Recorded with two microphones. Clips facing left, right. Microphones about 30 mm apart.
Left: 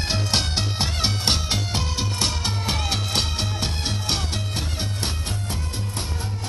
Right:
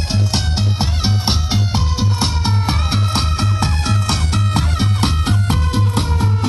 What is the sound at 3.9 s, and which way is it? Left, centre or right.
Music, right.